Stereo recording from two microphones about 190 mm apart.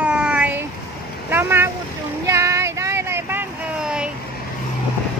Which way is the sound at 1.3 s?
10° right (ahead or behind).